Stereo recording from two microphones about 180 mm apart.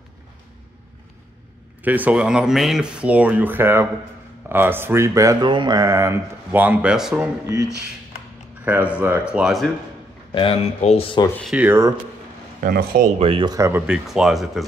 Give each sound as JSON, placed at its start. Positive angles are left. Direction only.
{"t": 1.8, "sound": "speech", "side_deg": -10}
{"t": 8.6, "sound": "speech", "side_deg": -10}
{"t": 10.3, "sound": "speech", "side_deg": 30}
{"t": 11.4, "sound": "speech", "side_deg": -10}
{"t": 12.5, "sound": "speech", "side_deg": -50}
{"t": 13.2, "sound": "speech", "side_deg": -30}